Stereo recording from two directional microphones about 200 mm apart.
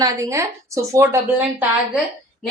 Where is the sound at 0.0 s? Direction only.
15° right (ahead or behind).